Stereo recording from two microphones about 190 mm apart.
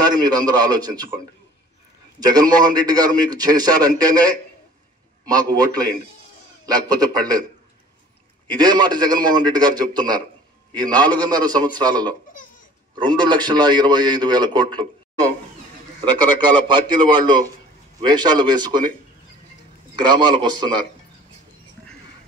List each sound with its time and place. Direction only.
0.0 s a man's voice: 20° right (ahead or behind)
2.1 s a man's voice: 20° right (ahead or behind)
8.5 s a man's voice: 20° right (ahead or behind)
16.6 s a man's voice: 25° right (ahead or behind)
20.0 s a man's voice: 25° right (ahead or behind)